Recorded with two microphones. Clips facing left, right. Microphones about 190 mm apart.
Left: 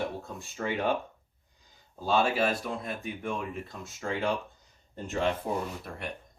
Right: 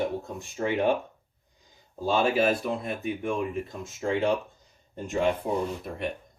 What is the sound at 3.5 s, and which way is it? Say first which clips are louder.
Speech: right 6 dB; 20° right (ahead or behind).